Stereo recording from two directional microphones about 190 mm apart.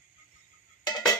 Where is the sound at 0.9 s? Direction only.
20° left (ahead or behind).